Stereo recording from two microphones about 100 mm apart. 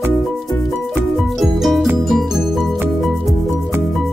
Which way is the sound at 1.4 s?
Centre (ahead or behind).